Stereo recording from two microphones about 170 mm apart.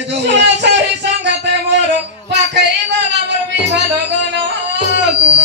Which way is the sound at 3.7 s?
90° right.